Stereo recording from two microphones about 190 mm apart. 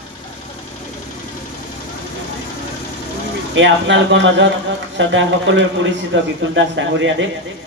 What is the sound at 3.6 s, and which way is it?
A man's voice, 75° right (ahead or behind).